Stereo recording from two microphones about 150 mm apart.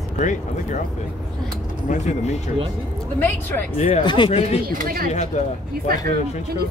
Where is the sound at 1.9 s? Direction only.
50° left (ahead or behind).